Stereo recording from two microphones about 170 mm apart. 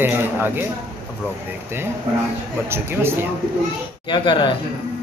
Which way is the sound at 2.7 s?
15° right (ahead or behind).